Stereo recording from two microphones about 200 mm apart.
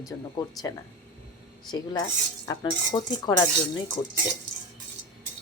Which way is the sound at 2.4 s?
20° left (ahead or behind).